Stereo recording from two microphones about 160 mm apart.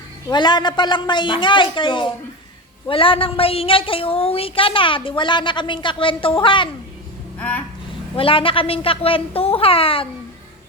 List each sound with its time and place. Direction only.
0.3 s a woman's voice: 25° left (ahead or behind)
7.3 s a sound: 10° left (ahead or behind)
8.1 s a woman's voice: 35° left (ahead or behind)